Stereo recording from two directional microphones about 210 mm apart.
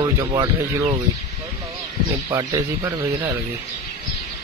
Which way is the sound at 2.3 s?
15° right (ahead or behind).